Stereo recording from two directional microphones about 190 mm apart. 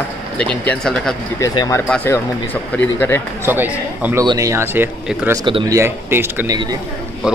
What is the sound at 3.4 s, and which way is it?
A man's voice, 10° right (ahead or behind).